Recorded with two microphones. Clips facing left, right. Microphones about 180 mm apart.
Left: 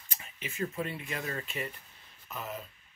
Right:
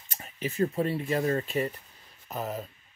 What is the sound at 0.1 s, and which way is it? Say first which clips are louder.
Speech: right 9 dB; 40° right (ahead or behind).